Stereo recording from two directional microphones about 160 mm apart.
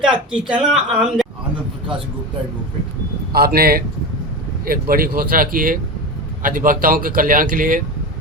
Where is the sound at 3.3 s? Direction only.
75° right (ahead or behind).